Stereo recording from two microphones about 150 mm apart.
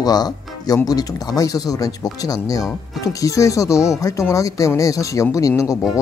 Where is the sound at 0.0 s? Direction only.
25° left (ahead or behind).